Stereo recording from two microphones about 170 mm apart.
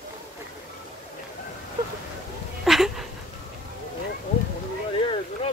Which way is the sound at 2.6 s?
Centre (ahead or behind).